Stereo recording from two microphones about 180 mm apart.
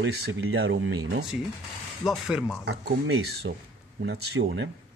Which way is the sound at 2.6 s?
65° right (ahead or behind).